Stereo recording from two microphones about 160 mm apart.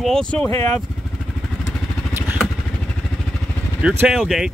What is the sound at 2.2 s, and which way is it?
Vehicle, 10° right (ahead or behind).